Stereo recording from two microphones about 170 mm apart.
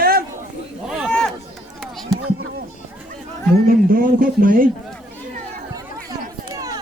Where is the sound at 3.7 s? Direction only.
55° right (ahead or behind).